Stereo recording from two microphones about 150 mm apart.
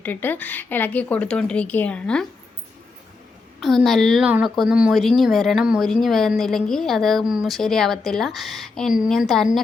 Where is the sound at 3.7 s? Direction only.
Centre (ahead or behind).